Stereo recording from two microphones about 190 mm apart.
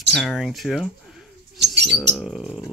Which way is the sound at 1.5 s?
65° right (ahead or behind).